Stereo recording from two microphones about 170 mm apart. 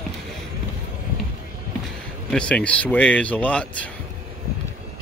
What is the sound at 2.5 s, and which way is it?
Speech, 5° left (ahead or behind).